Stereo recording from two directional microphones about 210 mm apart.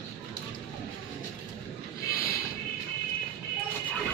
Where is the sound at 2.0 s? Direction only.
45° left (ahead or behind).